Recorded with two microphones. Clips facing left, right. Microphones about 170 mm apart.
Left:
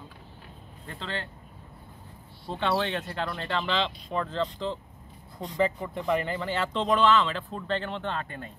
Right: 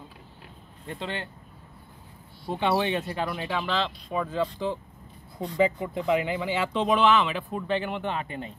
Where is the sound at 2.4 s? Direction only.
10° right (ahead or behind).